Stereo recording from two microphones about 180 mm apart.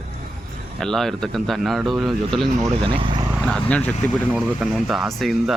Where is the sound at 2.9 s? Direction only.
30° right (ahead or behind).